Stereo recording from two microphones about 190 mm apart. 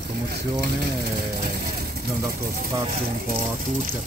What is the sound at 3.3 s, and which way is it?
Speech, 45° right (ahead or behind).